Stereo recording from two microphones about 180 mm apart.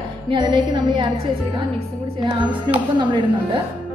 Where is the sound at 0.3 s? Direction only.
25° right (ahead or behind).